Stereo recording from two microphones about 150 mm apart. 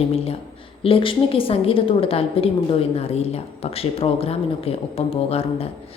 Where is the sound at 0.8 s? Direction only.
35° left (ahead or behind).